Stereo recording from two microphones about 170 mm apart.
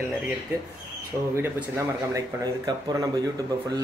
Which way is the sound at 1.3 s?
15° right (ahead or behind).